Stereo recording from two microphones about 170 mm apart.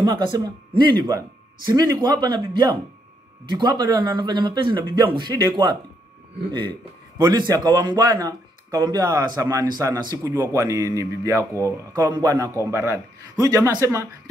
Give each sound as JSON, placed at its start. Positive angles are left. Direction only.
{"t": 0.0, "sound": "speech", "side_deg": -25}
{"t": 7.2, "sound": "speech", "side_deg": -25}